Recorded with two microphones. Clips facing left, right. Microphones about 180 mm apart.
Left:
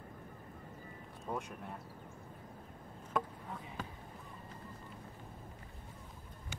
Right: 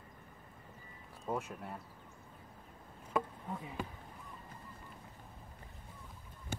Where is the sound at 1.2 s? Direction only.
5° right (ahead or behind).